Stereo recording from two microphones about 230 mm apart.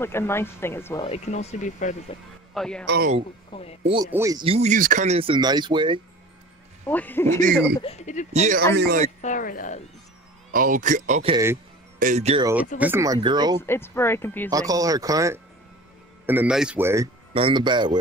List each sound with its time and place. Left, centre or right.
0.0 s speech: centre
1.0 s speech: left
2.5 s a man's voice: centre
3.8 s speech: right
6.9 s speech: centre
7.8 s speech: left
8.3 s speech: right
8.7 s speech: right
9.2 s speech: left
10.5 s speech: right
12.7 s speech: centre
13.6 s speech: centre
14.5 s speech: centre
17.3 s speech: right